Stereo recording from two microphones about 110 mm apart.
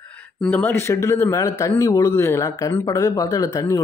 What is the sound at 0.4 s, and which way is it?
Speech, 20° left (ahead or behind).